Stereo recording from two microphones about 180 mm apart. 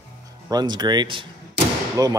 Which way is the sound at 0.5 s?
20° right (ahead or behind).